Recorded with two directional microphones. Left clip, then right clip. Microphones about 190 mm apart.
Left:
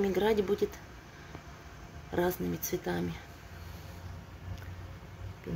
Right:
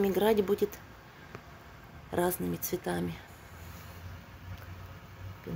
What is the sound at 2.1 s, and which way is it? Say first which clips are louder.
Speech: right 1 dB; 20° right (ahead or behind).